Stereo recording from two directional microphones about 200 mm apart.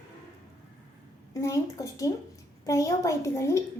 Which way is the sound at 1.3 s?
15° left (ahead or behind).